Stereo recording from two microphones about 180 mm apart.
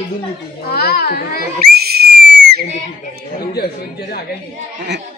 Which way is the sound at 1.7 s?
60° right (ahead or behind).